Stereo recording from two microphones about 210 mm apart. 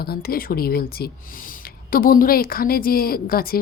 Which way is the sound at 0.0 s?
45° left (ahead or behind).